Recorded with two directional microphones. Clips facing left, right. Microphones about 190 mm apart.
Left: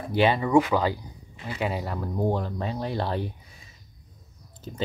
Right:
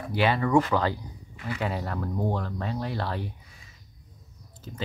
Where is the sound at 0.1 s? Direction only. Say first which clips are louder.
Left 2 dB; 20° left (ahead or behind).